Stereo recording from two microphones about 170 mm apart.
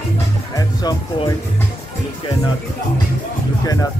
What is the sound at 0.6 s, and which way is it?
Music, 20° left (ahead or behind).